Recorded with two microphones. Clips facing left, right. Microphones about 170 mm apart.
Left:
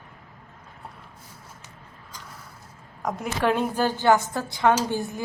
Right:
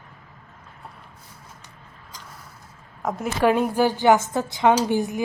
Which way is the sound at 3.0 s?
Centre (ahead or behind).